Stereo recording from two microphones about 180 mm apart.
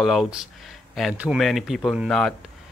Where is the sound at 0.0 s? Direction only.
Centre (ahead or behind).